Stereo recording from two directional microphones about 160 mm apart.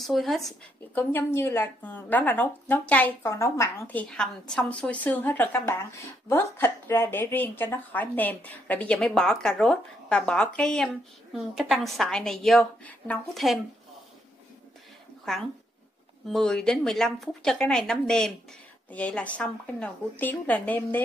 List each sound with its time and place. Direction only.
0.0 s a woman's voice: centre (ahead or behind)
1.1 s a woman's voice: 15° left (ahead or behind)
16.3 s a woman's voice: 5° left (ahead or behind)